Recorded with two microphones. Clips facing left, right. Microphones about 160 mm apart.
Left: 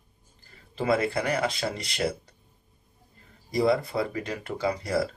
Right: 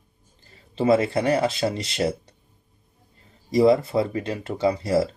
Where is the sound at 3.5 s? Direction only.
25° right (ahead or behind).